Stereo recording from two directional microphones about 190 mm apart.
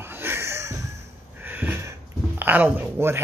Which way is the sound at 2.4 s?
10° right (ahead or behind).